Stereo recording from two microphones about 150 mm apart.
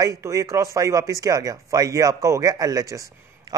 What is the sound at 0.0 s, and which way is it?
Speech, 20° right (ahead or behind).